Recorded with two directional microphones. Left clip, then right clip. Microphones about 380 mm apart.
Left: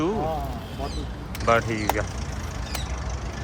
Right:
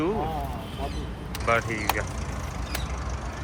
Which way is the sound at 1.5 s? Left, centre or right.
Centre.